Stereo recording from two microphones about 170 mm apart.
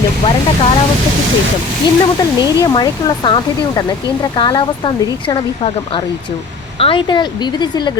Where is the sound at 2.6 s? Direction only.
25° left (ahead or behind).